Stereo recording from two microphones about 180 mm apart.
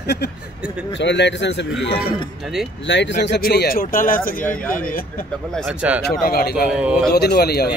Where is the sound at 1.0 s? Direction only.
75° left (ahead or behind).